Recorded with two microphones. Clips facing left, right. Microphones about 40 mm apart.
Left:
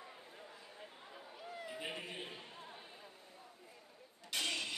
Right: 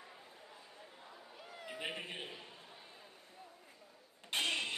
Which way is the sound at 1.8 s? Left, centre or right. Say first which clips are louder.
Right 4 dB; right.